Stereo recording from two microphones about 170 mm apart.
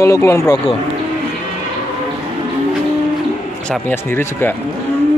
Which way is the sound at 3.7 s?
10° left (ahead or behind).